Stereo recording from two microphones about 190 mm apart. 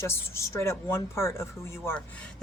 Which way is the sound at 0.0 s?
15° left (ahead or behind).